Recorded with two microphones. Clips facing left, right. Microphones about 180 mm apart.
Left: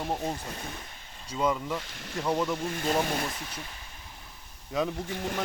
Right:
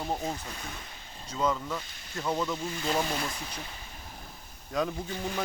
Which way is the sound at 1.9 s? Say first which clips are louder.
Left 4 dB; 90° left.